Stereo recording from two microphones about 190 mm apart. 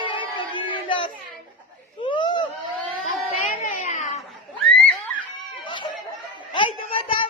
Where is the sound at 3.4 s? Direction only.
40° left (ahead or behind).